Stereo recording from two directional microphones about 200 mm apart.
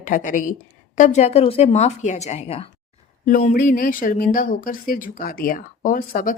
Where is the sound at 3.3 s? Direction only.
40° left (ahead or behind).